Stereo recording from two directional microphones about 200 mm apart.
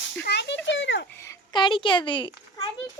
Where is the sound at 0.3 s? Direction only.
60° left (ahead or behind).